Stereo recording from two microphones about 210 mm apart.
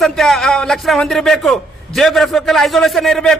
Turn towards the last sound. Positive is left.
turn(degrees=0)  # may be behind; listen again after turning